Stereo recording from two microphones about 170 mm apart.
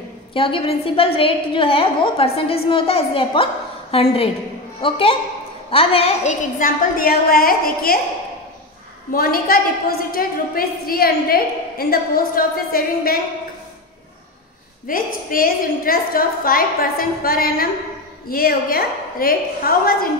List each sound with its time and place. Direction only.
0.3 s a woman's voice: 30° left (ahead or behind)
6.6 s a woman's voice: 60° left (ahead or behind)
9.1 s a woman's voice: 60° left (ahead or behind)
14.9 s a woman's voice: 55° left (ahead or behind)